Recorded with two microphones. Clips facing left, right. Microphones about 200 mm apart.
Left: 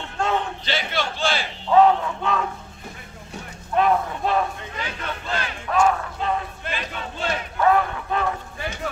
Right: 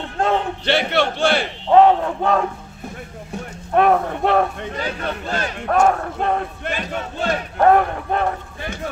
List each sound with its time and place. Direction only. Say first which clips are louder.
0.2 s a man's voice: right 4 dB; 60° right (ahead or behind)
1.7 s speech: right 3 dB; 35° right (ahead or behind)
3.7 s speech: right 4 dB; 60° right (ahead or behind)
4.7 s speech: right 7 dB; 40° right (ahead or behind); by 8.7 s 55° right (ahead or behind)